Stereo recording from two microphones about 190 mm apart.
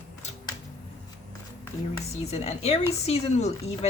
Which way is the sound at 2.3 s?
35° left (ahead or behind).